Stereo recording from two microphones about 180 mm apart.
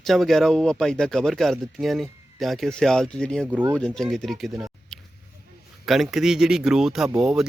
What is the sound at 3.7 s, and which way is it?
Speech, 5° left (ahead or behind).